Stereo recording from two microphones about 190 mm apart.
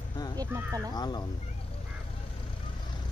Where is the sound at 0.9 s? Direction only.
20° left (ahead or behind).